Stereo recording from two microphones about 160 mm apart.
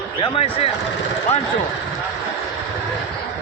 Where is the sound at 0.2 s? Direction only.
35° left (ahead or behind).